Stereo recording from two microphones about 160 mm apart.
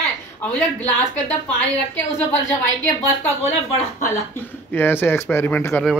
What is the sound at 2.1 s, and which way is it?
Speech, 15° left (ahead or behind).